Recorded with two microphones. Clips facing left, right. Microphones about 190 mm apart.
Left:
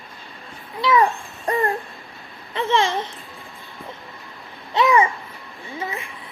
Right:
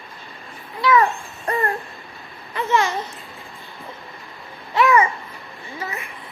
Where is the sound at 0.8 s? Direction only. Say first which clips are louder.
Right 1 dB; 25° left (ahead or behind).